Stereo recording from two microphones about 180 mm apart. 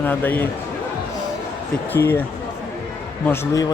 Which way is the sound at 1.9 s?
10° left (ahead or behind).